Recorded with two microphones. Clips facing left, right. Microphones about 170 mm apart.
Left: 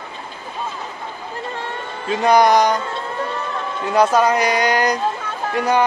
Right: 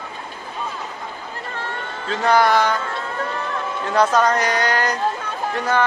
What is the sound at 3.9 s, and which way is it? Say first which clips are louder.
Speech: left 2 dB; 10° left (ahead or behind).